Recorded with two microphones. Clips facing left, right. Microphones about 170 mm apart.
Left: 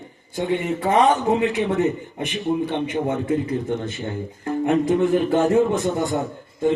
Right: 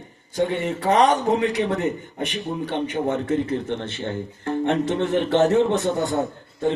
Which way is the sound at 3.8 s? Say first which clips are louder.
Left 1 dB; 30° right (ahead or behind).